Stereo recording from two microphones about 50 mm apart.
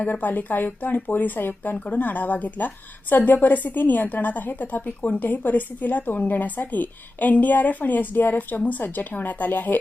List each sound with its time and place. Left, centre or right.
0.0 s a woman's voice: left